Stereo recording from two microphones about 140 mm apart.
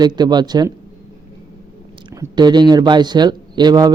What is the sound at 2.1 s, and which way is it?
A man's voice, 30° right (ahead or behind).